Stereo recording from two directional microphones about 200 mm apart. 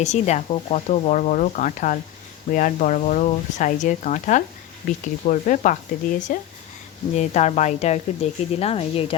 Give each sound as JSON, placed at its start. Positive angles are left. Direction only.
{"t": 0.0, "sound": "speech", "side_deg": 35}